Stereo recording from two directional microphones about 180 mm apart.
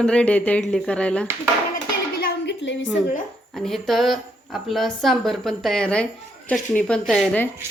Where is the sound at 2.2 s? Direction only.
80° left.